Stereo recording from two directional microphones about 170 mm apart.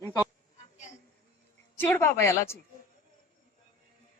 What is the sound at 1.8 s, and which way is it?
Speech, 15° left (ahead or behind).